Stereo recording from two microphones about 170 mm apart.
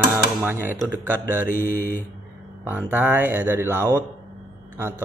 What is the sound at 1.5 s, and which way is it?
Speech, 10° left (ahead or behind).